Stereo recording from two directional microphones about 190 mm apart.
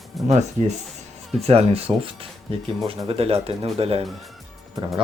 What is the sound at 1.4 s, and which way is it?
Speech, 30° right (ahead or behind).